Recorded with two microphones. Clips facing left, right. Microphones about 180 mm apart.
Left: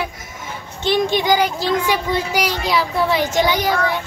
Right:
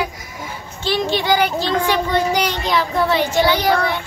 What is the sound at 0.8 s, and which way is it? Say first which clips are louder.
A child's voice: left 2 dB; 20° left (ahead or behind).